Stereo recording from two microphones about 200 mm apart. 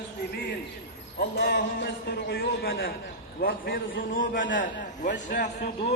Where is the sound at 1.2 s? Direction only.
55° left (ahead or behind).